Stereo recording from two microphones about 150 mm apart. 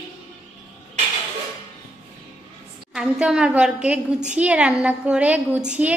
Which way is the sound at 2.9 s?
5° right (ahead or behind).